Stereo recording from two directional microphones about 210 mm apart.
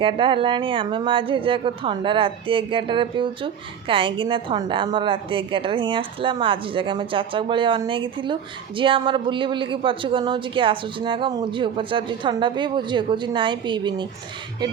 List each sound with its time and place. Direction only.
0.0 s speech: 25° right (ahead or behind)